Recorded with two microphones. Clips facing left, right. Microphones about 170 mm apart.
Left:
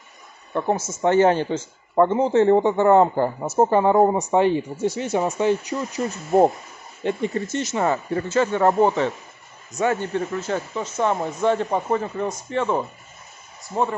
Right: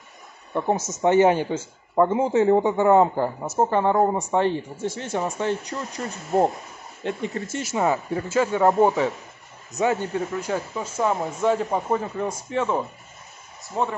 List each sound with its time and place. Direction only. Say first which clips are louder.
0.6 s speech: left 1 dB; 10° right (ahead or behind)
3.3 s speech: left 5 dB; 10° left (ahead or behind)
7.0 s speech: left 4 dB; centre (ahead or behind)